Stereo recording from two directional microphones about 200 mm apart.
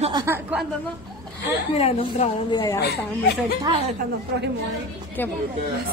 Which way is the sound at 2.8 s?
55° left (ahead or behind).